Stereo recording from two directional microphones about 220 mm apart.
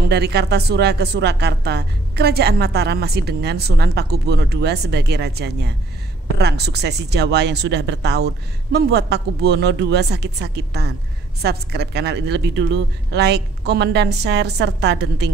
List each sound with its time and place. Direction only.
0.1 s a woman's voice: 45° right (ahead or behind)